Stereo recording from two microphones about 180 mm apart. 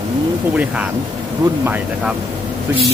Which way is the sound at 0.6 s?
5° right (ahead or behind).